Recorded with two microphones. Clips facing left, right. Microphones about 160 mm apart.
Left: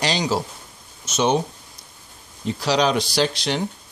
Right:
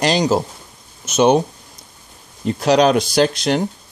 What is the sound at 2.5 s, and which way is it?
Speech, 50° right (ahead or behind).